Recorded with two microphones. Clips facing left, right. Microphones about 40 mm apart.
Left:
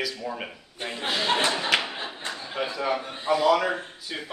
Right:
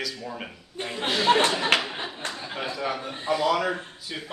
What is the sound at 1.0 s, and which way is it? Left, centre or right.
Speech, right.